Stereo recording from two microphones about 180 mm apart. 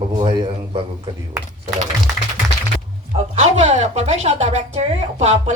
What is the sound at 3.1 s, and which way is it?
Speech, 40° right (ahead or behind).